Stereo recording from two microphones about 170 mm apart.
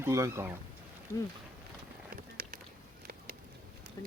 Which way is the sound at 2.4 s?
60° right (ahead or behind).